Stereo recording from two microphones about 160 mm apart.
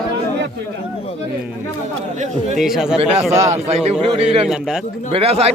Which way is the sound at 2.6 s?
Centre (ahead or behind).